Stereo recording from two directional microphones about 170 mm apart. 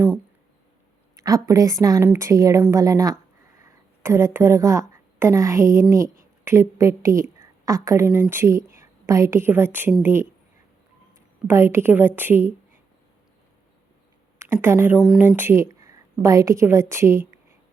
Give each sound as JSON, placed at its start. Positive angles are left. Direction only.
{"t": 1.1, "sound": "a woman's voice", "side_deg": -20}
{"t": 11.4, "sound": "a woman's voice", "side_deg": -15}
{"t": 14.3, "sound": "speech", "side_deg": -15}
{"t": 15.4, "sound": "a woman's voice", "side_deg": -15}